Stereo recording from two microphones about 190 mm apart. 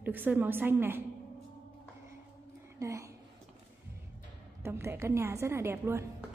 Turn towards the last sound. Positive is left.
turn(degrees=-10)  # may be behind; listen again after turning